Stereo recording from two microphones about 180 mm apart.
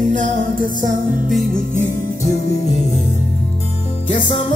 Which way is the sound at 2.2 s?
40° left (ahead or behind).